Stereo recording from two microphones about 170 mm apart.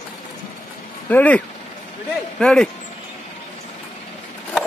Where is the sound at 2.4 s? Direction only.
5° left (ahead or behind).